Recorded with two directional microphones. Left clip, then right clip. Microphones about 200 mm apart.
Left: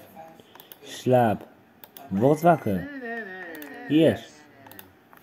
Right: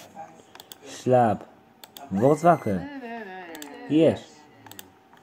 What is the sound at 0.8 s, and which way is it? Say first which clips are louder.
Speech: right 1 dB; 20° left (ahead or behind).